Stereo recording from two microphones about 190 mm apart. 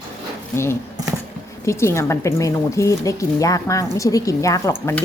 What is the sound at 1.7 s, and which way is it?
Speech, 15° left (ahead or behind).